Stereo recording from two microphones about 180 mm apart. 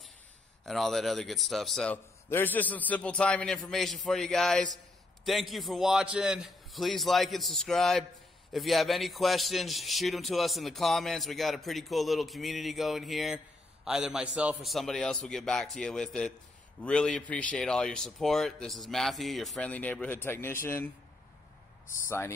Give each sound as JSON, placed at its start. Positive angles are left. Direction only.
{"t": 0.7, "sound": "a man's voice", "side_deg": 0}
{"t": 22.0, "sound": "speech", "side_deg": 15}